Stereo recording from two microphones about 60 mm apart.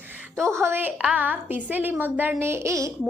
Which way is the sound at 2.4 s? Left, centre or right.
Right.